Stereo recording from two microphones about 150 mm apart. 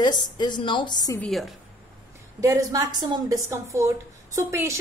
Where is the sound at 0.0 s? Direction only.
30° left (ahead or behind).